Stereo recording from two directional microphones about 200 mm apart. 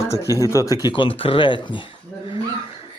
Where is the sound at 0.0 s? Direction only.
15° left (ahead or behind).